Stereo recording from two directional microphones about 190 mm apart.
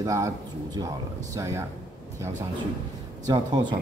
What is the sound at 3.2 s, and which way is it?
Speech, 20° right (ahead or behind).